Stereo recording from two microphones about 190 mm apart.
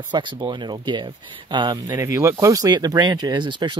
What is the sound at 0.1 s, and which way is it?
Speech, 25° right (ahead or behind).